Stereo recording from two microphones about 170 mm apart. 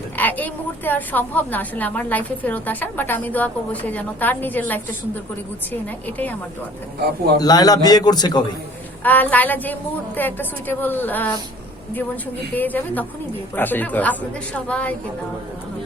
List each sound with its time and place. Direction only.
0.2 s a woman's voice: 10° left (ahead or behind)
6.1 s a woman's voice: 10° left (ahead or behind)
7.3 s a man's voice: 25° left (ahead or behind)
9.0 s a woman's voice: 10° left (ahead or behind)
12.5 s a woman's voice: 10° left (ahead or behind)